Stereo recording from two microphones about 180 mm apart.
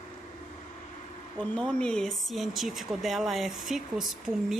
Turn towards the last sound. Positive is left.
turn(degrees=0)  # may be behind; listen again after turning